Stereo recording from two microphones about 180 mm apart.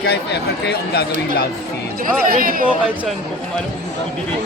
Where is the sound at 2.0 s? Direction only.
50° right (ahead or behind).